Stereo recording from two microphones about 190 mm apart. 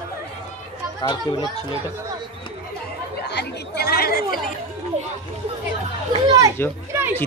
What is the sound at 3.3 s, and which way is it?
Chatter, 60° left (ahead or behind).